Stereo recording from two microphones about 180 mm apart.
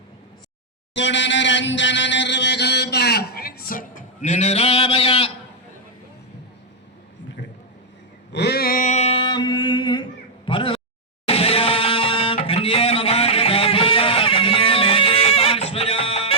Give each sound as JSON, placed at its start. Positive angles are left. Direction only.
{"t": 0.9, "sound": "chant", "side_deg": 80}
{"t": 8.3, "sound": "a sound", "side_deg": 65}
{"t": 11.3, "sound": "music", "side_deg": 30}